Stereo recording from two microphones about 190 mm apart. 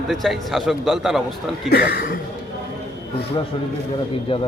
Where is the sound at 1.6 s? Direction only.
55° left (ahead or behind).